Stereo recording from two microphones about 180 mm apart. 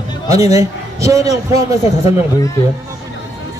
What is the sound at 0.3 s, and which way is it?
A man's voice, 20° right (ahead or behind).